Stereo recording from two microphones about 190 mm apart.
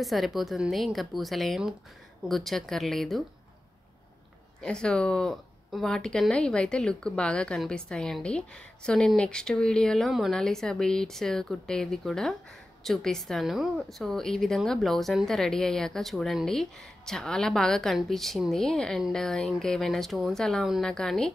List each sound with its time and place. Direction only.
0.0 s a woman's voice: centre (ahead or behind)
4.6 s a woman's voice: 5° left (ahead or behind)